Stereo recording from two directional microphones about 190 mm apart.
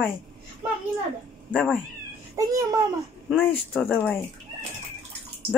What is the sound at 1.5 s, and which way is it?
Speech, 5° left (ahead or behind).